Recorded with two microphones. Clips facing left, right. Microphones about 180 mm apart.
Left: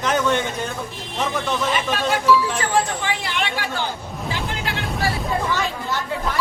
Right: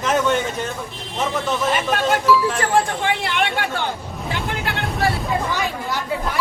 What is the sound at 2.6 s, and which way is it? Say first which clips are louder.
Speech: right 2 dB; 55° right (ahead or behind).